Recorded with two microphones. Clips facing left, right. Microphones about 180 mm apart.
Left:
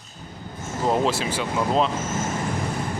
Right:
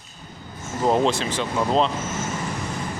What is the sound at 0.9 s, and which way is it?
Speech, 5° left (ahead or behind).